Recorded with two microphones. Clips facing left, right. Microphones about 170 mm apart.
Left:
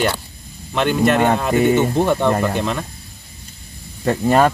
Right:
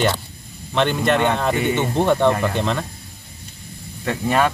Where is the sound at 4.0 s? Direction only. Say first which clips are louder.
Left 5 dB; 40° left (ahead or behind).